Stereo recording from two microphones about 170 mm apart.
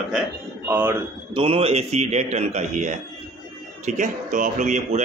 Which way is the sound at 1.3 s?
30° right (ahead or behind).